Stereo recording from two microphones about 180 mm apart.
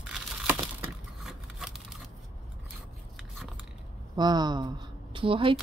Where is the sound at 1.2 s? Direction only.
Centre (ahead or behind).